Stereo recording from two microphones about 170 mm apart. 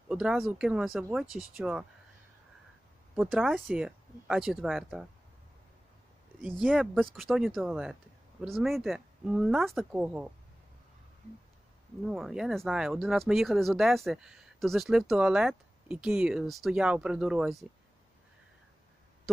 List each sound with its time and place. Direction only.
0.1 s speech: 5° right (ahead or behind)
1.2 s speech: 20° left (ahead or behind)
1.6 s speech: 5° right (ahead or behind)
3.2 s speech: 5° right (ahead or behind)
6.6 s speech: 5° right (ahead or behind)
12.0 s speech: centre (ahead or behind)